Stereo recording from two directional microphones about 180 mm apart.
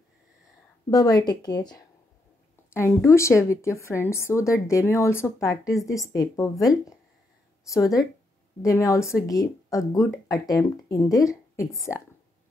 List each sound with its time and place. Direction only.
0.8 s a woman's voice: 20° left (ahead or behind)